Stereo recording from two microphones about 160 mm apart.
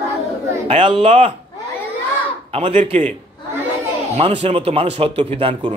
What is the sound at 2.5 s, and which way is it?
Speech, 35° right (ahead or behind).